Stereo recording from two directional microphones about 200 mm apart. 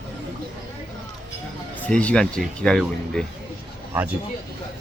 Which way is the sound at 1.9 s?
5° left (ahead or behind).